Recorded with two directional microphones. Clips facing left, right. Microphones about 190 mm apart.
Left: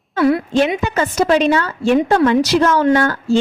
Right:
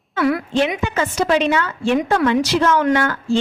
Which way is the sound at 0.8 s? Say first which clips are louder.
Left 3 dB; 40° left (ahead or behind).